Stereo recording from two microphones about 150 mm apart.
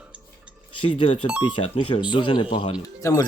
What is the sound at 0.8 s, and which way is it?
Speech, 35° left (ahead or behind).